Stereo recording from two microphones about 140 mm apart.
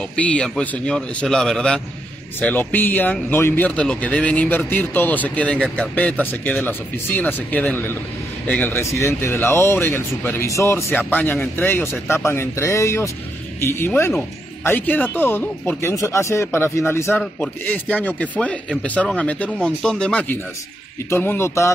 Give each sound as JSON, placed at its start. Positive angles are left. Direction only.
{"t": 0.1, "sound": "speech", "side_deg": 10}